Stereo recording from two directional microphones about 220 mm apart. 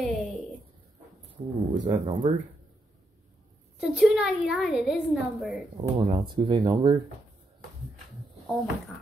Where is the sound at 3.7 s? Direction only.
5° right (ahead or behind).